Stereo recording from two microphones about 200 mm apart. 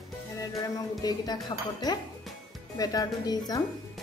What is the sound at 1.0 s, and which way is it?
Speech, 20° left (ahead or behind).